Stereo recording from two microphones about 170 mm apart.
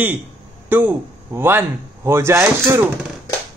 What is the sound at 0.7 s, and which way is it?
Speech, 10° right (ahead or behind).